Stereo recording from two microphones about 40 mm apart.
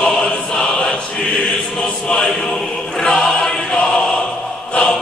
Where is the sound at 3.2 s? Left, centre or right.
Centre.